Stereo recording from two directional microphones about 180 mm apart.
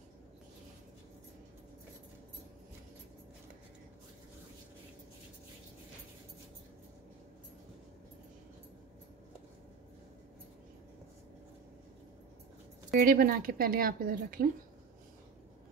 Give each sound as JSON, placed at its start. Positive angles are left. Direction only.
{"t": 12.9, "sound": "speech", "side_deg": -50}